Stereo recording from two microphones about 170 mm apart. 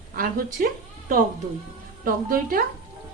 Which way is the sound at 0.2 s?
55° right (ahead or behind).